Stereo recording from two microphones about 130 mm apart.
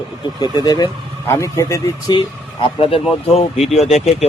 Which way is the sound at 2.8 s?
45° left (ahead or behind).